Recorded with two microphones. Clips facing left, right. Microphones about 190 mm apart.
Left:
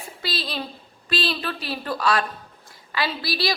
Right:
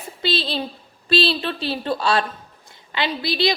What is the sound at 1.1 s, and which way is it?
A woman's voice, 30° right (ahead or behind).